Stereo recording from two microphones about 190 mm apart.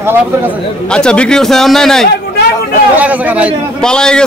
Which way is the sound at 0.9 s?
5° left (ahead or behind).